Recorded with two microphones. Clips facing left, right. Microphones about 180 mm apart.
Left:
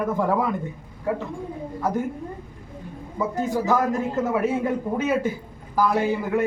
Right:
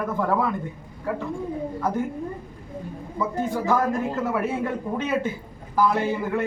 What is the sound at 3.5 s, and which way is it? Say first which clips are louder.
A man's voice: left 1 dB; 15° left (ahead or behind).